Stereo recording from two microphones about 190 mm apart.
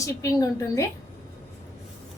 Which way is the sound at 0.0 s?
15° left (ahead or behind).